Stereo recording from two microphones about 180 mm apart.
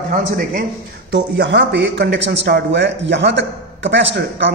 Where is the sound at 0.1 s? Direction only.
50° right (ahead or behind).